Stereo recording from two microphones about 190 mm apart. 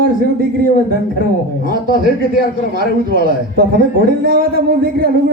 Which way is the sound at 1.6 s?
50° right (ahead or behind).